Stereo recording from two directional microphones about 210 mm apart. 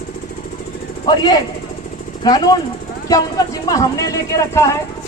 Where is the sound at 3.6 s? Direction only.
15° left (ahead or behind).